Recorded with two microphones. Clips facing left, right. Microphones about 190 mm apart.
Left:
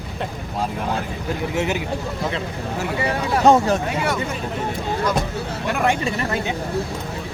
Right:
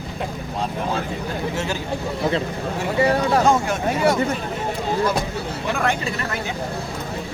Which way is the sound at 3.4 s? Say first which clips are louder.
Left 4 dB; 35° left (ahead or behind).